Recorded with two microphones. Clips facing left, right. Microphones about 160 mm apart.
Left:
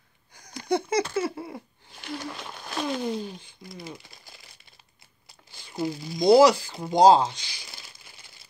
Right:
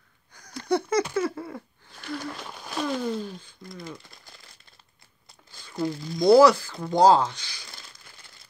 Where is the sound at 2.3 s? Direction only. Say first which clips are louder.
Even; 5° right (ahead or behind).